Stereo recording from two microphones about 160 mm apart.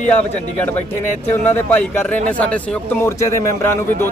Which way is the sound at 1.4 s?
10° left (ahead or behind).